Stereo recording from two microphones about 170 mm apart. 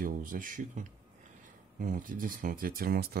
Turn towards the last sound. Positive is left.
turn(degrees=-65)  # may be behind; listen again after turning